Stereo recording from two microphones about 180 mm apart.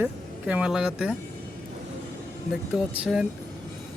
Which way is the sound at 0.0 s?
10° right (ahead or behind).